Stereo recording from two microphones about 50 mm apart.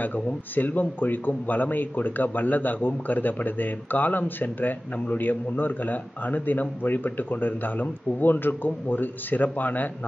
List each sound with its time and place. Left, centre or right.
0.0 s a man's voice: left